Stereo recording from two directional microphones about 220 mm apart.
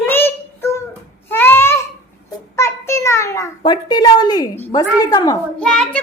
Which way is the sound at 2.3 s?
10° left (ahead or behind).